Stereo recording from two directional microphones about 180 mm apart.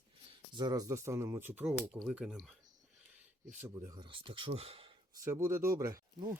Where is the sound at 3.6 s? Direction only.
25° right (ahead or behind).